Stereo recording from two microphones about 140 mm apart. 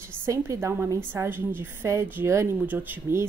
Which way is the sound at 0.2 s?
20° right (ahead or behind).